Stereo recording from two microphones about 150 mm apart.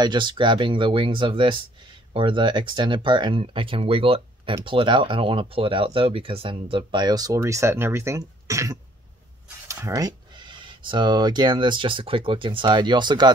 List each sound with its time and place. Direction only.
0.0 s speech: 30° right (ahead or behind)